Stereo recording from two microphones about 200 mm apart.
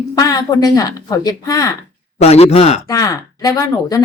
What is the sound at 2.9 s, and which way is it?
A woman's voice, 15° left (ahead or behind).